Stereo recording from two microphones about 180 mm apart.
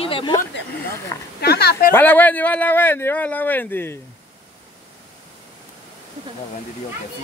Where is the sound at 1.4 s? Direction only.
60° left (ahead or behind).